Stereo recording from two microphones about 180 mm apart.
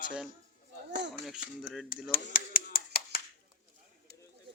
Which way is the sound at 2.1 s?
50° left (ahead or behind).